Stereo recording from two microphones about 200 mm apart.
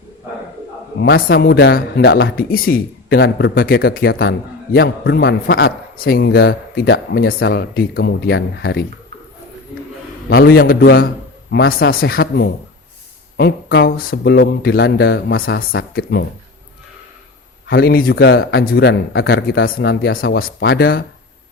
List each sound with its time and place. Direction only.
1.0 s a man's voice: 50° left (ahead or behind)
10.2 s a man's voice: 50° left (ahead or behind)
17.7 s a man's voice: 50° left (ahead or behind)